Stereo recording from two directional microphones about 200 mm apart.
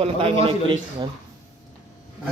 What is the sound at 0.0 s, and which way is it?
Speech, 30° right (ahead or behind).